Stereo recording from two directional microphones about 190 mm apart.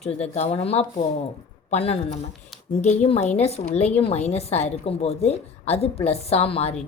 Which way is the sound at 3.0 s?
35° left (ahead or behind).